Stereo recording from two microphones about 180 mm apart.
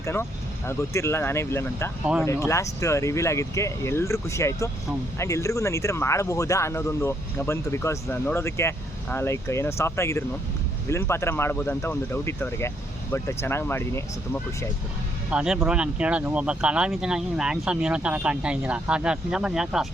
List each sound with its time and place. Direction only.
0.0 s speech: 15° left (ahead or behind)
15.3 s speech: 5° right (ahead or behind)